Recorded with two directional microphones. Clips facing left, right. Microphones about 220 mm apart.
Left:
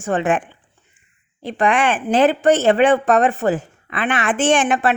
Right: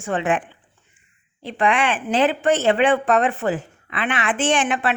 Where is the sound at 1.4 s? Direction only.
45° left (ahead or behind).